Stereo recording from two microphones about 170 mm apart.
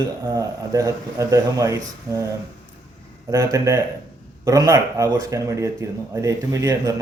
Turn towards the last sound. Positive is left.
turn(degrees=-20)  # may be behind; listen again after turning